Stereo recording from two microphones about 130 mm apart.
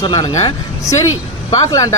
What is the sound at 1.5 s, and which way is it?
Speech, 25° left (ahead or behind).